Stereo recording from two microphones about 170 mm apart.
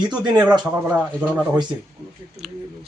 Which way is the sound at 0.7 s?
10° right (ahead or behind).